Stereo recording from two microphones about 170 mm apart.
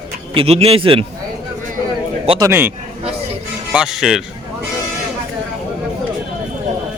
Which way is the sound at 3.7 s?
5° right (ahead or behind).